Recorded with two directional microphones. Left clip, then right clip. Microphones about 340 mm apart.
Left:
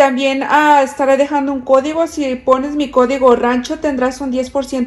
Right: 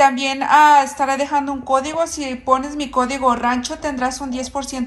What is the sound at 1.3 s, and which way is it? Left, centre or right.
Speech, centre.